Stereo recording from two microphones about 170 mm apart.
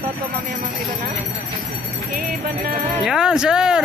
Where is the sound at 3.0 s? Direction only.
5° right (ahead or behind).